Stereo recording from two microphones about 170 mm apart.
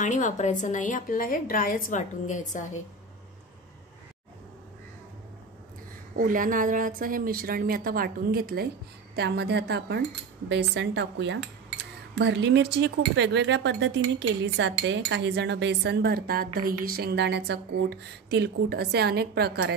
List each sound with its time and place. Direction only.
0.0 s a woman's voice: 45° left (ahead or behind)
6.1 s a woman's voice: 55° right (ahead or behind)
9.1 s speech: 75° right (ahead or behind)
10.5 s speech: 90° right; by 19.7 s 70° right (ahead or behind)